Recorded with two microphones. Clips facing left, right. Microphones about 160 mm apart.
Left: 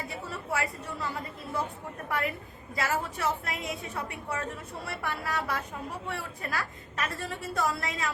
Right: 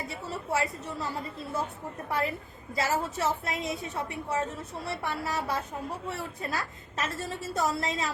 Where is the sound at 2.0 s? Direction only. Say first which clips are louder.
Right 1 dB; 30° right (ahead or behind).